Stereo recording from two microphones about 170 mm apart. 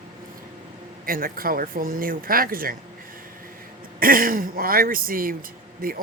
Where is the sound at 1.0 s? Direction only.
55° right (ahead or behind).